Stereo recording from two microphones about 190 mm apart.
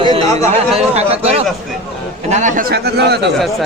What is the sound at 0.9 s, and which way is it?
A man's voice, 35° right (ahead or behind).